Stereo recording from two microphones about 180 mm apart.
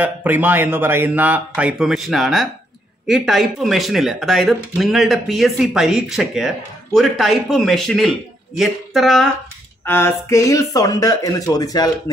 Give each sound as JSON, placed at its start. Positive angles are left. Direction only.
{"t": 0.0, "sound": "speech", "side_deg": -10}
{"t": 9.8, "sound": "speech", "side_deg": 15}